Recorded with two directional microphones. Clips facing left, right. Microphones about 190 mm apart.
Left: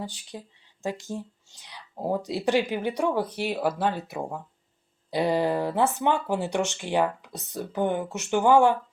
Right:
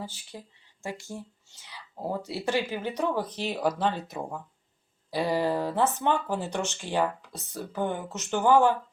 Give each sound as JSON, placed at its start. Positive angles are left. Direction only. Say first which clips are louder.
{"t": 0.0, "sound": "speech", "louder": "left 3 dB", "side_deg": 15}
{"t": 5.1, "sound": "speech", "louder": "left 2 dB", "side_deg": 20}